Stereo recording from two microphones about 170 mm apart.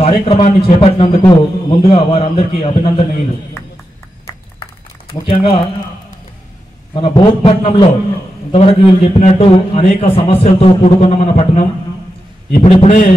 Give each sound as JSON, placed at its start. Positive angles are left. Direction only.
{"t": 0.0, "sound": "a man's voice", "side_deg": 35}
{"t": 5.1, "sound": "a man's voice", "side_deg": 35}
{"t": 6.9, "sound": "a man's voice", "side_deg": 35}
{"t": 12.6, "sound": "a man's voice", "side_deg": 35}